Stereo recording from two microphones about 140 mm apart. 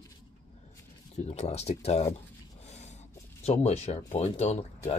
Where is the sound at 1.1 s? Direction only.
50° left (ahead or behind).